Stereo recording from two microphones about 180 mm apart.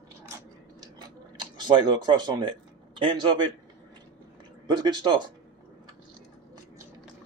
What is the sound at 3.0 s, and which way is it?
Speech, 25° right (ahead or behind).